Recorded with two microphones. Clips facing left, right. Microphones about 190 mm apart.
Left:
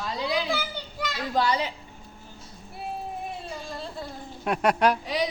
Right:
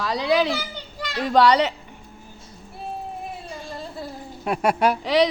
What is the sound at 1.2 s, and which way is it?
Speech, 75° right (ahead or behind).